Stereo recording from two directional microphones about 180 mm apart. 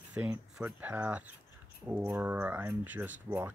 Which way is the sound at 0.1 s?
10° right (ahead or behind).